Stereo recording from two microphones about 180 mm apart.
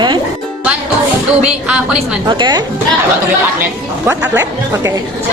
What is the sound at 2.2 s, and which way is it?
Speech, 25° right (ahead or behind).